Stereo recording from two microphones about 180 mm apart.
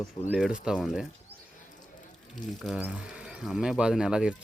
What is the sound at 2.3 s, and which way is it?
Speech, centre (ahead or behind).